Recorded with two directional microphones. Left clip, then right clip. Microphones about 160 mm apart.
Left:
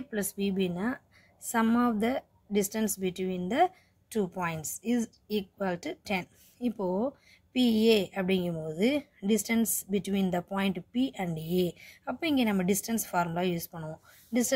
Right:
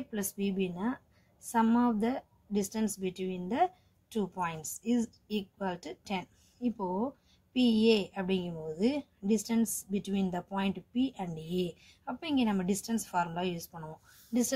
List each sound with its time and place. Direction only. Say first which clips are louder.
0.1 s a woman's voice: left 4 dB; 35° left (ahead or behind)